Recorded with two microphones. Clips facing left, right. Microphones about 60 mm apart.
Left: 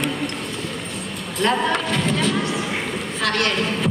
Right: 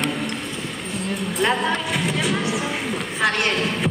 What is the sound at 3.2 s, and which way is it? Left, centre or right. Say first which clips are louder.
Speech: even; centre.